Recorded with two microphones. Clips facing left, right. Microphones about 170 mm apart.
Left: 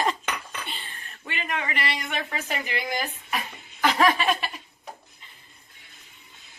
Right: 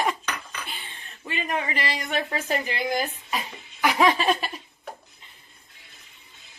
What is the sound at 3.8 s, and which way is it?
Laughter, 10° right (ahead or behind).